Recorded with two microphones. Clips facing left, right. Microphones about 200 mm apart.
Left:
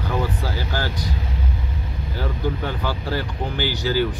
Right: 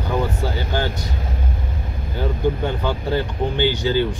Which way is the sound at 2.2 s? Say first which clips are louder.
Right 5 dB; 25° right (ahead or behind).